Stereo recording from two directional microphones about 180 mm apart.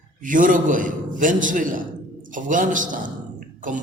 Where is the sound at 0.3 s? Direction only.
50° right (ahead or behind).